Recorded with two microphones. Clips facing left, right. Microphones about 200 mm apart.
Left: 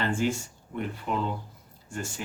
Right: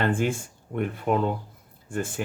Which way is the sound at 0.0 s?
55° right (ahead or behind).